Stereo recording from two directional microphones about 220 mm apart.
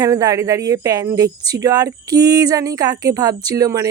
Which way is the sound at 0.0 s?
15° right (ahead or behind).